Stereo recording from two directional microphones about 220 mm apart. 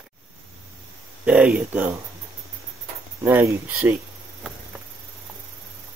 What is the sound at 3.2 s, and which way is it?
Speech, 10° right (ahead or behind).